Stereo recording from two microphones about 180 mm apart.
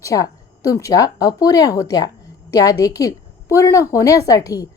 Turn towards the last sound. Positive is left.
turn(degrees=20)  # may be behind; listen again after turning